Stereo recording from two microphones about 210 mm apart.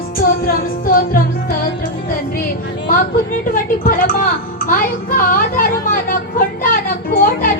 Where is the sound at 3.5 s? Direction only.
40° left (ahead or behind).